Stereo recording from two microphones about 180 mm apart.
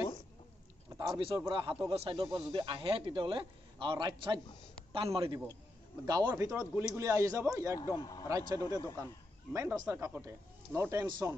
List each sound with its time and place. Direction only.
0.9 s a sound: 25° right (ahead or behind)
1.5 s a man's voice: 30° right (ahead or behind)
6.2 s speech: 15° right (ahead or behind)
7.7 s speech: 20° left (ahead or behind)
8.3 s speech: 20° right (ahead or behind)
8.5 s speech: 15° left (ahead or behind)
9.0 s speech: 15° right (ahead or behind)